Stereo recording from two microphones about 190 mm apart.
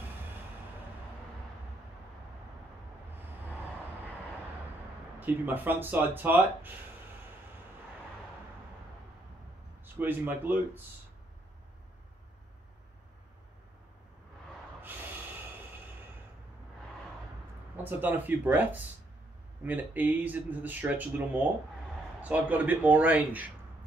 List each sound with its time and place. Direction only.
5.2 s speech: 10° right (ahead or behind)
9.9 s speech: 10° right (ahead or behind)
17.8 s speech: 10° right (ahead or behind)
22.2 s speech: 10° right (ahead or behind)